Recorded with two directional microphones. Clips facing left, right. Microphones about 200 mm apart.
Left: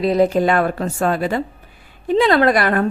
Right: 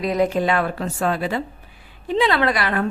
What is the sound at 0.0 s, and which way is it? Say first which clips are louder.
A woman's voice: left 4 dB; 30° left (ahead or behind).